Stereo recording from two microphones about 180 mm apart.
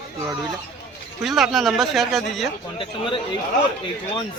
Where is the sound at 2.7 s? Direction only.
30° left (ahead or behind).